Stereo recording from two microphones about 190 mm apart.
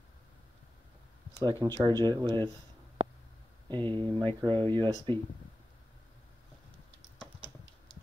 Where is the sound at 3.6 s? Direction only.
25° right (ahead or behind).